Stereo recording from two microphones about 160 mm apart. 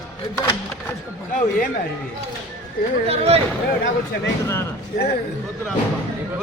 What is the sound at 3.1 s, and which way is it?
Speech, 40° right (ahead or behind).